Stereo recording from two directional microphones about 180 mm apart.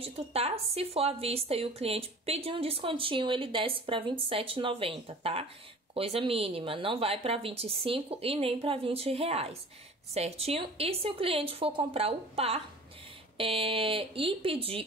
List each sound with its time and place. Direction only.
0.0 s speech: 35° right (ahead or behind)